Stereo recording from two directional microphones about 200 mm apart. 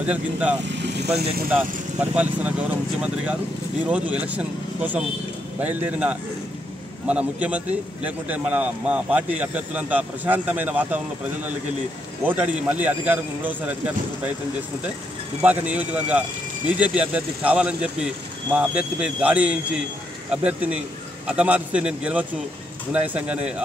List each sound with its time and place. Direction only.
0.0 s speech: 5° right (ahead or behind)
0.7 s vehicle: 60° right (ahead or behind)
2.0 s speech: 5° right (ahead or behind)
12.3 s speech: 5° right (ahead or behind)
15.4 s a man's voice: 5° right (ahead or behind)